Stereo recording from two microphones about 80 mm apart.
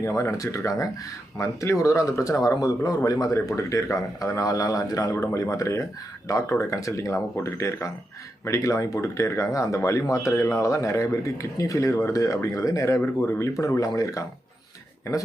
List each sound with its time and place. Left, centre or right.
0.0 s speech: left